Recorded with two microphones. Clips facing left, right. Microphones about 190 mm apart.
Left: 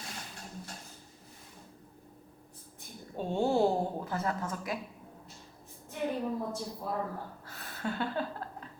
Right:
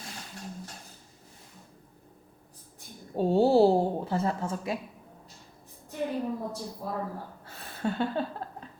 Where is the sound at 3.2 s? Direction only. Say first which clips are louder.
Right 7 dB; 35° right (ahead or behind).